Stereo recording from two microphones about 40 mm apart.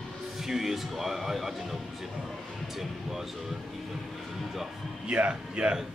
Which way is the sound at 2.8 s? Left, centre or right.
Centre.